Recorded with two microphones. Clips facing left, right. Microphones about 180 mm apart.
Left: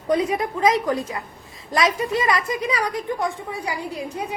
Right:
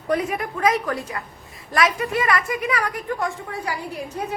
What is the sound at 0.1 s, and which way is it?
A woman's voice, 20° left (ahead or behind).